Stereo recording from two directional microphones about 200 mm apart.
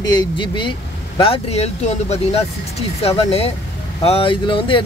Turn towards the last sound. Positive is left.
turn(degrees=25)  # may be behind; listen again after turning